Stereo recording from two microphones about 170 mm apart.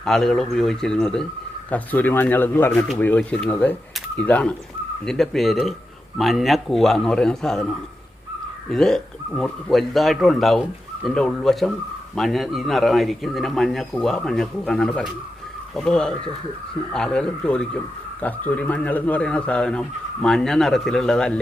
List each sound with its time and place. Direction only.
0.0 s a man's voice: centre (ahead or behind)
8.7 s a man's voice: centre (ahead or behind)